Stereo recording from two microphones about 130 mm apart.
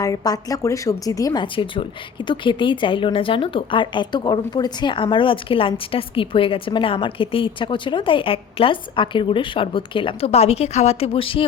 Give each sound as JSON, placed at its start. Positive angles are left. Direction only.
{"t": 0.0, "sound": "speech", "side_deg": 25}